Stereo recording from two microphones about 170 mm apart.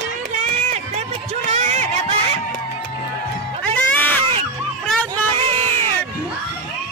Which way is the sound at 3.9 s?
10° left (ahead or behind).